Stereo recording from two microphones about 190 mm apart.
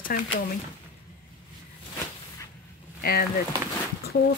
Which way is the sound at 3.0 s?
55° left (ahead or behind).